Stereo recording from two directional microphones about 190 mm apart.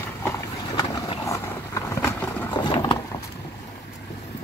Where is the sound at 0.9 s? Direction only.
15° left (ahead or behind).